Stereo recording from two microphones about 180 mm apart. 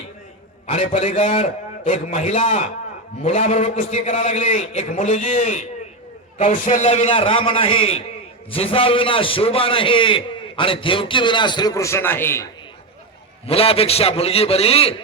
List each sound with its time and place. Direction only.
0.7 s a man's voice: 35° left (ahead or behind); by 12.5 s 15° left (ahead or behind)
13.5 s a man's voice: 30° left (ahead or behind)